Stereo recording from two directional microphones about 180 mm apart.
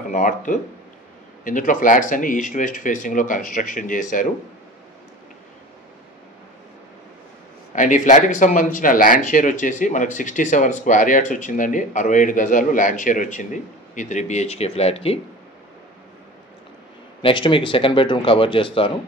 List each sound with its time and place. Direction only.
0.1 s speech: 45° left (ahead or behind)
7.7 s speech: 45° left (ahead or behind)
17.2 s speech: 30° left (ahead or behind)